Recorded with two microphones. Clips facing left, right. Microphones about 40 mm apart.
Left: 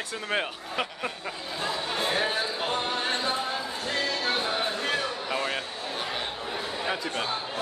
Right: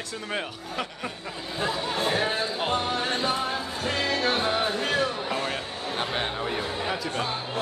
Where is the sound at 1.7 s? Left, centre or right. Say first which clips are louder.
Right 2 dB; centre.